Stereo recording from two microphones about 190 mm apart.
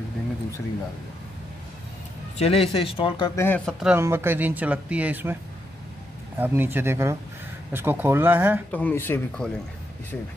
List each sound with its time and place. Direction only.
2.3 s speech: 30° left (ahead or behind)
3.3 s speech: 10° left (ahead or behind)
3.8 s speech: 10° right (ahead or behind)
8.7 s speech: 10° left (ahead or behind)